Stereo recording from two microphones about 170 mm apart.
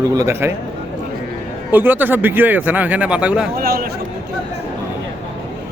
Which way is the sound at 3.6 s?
65° right (ahead or behind).